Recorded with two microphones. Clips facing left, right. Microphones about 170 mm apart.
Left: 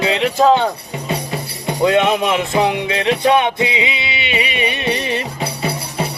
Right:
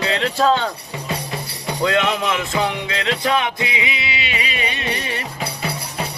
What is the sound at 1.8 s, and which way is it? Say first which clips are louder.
Music: left 5 dB; 20° left (ahead or behind).